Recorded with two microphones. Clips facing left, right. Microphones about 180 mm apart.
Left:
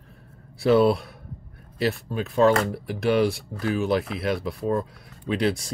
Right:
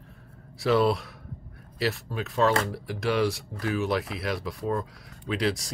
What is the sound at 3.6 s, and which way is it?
Speech, 25° left (ahead or behind).